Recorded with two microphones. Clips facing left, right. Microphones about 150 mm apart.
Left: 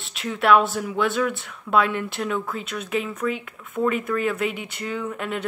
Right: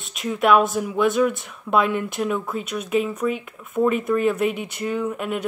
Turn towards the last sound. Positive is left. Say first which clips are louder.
# right 3 dB
turn(degrees=-15)  # may be behind; listen again after turning